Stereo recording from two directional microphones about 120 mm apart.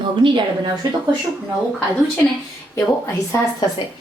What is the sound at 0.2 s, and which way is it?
Speech, 45° right (ahead or behind).